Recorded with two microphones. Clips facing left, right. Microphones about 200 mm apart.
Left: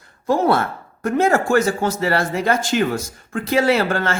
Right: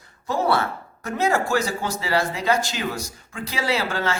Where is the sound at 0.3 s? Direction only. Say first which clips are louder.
Left 5 dB; 50° left (ahead or behind).